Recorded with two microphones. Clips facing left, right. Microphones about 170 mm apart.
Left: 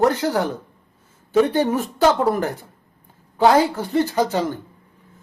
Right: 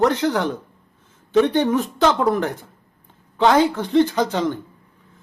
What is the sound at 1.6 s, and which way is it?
Speech, 40° left (ahead or behind).